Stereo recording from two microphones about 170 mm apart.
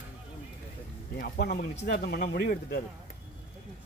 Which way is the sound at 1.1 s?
65° left (ahead or behind).